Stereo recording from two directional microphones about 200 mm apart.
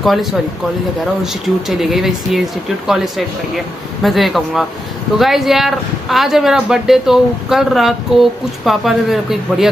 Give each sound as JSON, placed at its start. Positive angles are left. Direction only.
{"t": 0.0, "sound": "speech", "side_deg": 0}